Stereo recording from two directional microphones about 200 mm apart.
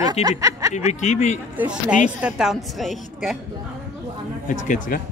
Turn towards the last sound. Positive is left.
turn(degrees=40)  # may be behind; listen again after turning